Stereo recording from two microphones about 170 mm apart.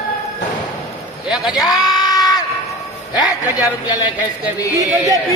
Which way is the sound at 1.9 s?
25° left (ahead or behind).